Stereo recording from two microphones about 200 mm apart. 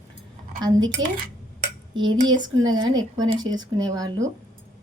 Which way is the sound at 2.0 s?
25° right (ahead or behind).